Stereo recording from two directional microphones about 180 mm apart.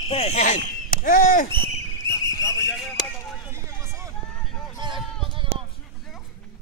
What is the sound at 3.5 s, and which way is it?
Run, 15° right (ahead or behind).